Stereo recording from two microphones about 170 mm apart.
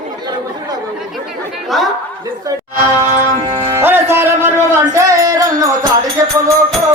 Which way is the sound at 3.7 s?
15° right (ahead or behind).